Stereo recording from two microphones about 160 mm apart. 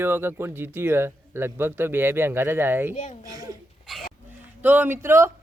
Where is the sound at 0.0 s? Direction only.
15° right (ahead or behind).